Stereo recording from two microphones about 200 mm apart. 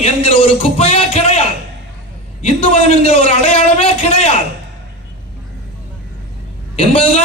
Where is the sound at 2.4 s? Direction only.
30° left (ahead or behind).